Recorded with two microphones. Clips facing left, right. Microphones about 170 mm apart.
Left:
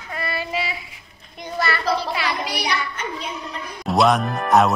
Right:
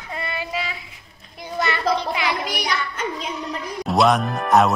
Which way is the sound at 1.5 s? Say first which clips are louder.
Right 1 dB; 20° right (ahead or behind).